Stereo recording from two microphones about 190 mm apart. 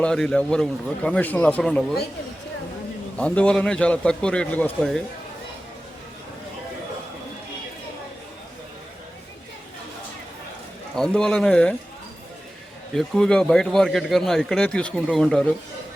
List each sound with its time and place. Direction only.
0.0 s a man's voice: 5° left (ahead or behind)
3.2 s a man's voice: 5° left (ahead or behind)
10.9 s a man's voice: 5° left (ahead or behind)
12.9 s a man's voice: centre (ahead or behind)